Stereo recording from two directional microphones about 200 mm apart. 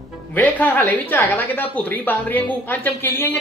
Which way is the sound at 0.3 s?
10° left (ahead or behind).